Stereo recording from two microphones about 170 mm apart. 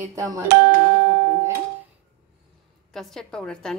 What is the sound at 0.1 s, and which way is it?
Speech, 20° right (ahead or behind).